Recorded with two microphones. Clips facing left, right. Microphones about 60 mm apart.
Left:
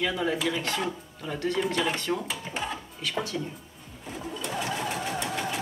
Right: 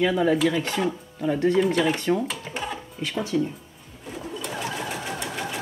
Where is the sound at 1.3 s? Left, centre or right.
Right.